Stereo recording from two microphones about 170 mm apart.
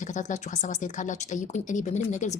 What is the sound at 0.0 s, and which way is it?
Speech, 45° left (ahead or behind).